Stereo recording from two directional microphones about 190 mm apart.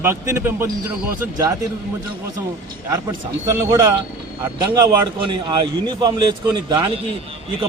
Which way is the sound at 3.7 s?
20° right (ahead or behind).